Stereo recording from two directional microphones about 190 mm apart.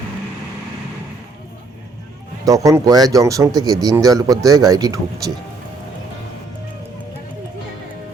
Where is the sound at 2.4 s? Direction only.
15° right (ahead or behind).